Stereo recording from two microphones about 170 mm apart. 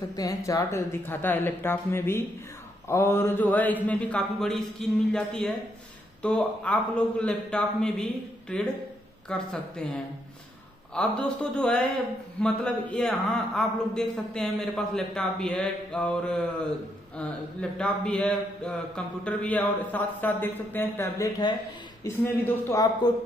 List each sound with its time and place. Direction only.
0.1 s a man's voice: 20° left (ahead or behind)
11.0 s a man's voice: 5° left (ahead or behind)